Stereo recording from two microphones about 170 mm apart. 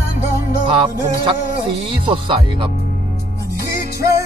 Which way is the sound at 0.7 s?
30° right (ahead or behind).